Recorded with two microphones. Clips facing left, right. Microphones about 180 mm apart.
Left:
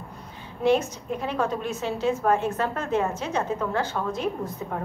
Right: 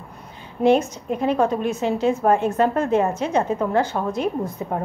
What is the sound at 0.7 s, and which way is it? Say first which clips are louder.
A woman's voice: right 4 dB; 15° right (ahead or behind).